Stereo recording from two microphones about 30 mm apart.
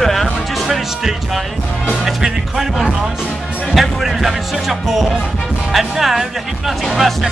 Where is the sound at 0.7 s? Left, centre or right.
Centre.